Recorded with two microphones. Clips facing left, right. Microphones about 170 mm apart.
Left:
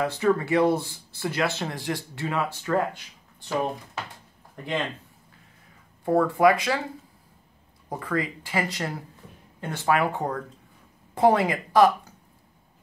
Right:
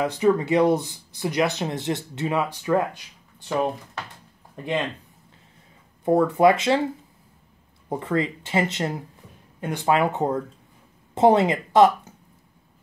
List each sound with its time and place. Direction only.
0.0 s speech: 15° right (ahead or behind)
6.0 s speech: 20° right (ahead or behind)
7.9 s speech: 25° right (ahead or behind)